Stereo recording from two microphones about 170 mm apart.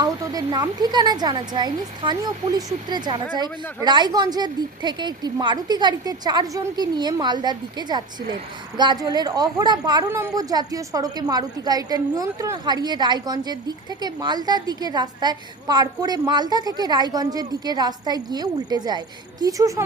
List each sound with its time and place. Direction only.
0.0 s a woman's voice: 20° right (ahead or behind)